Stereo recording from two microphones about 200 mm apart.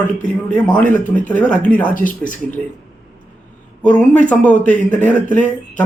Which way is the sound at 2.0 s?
40° left (ahead or behind).